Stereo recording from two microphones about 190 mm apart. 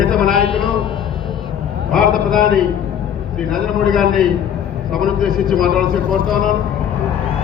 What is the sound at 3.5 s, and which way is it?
A man's voice, centre (ahead or behind).